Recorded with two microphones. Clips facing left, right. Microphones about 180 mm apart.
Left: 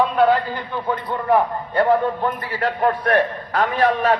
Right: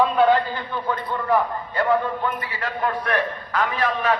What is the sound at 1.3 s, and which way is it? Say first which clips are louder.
A man's voice: left 4 dB; 30° left (ahead or behind).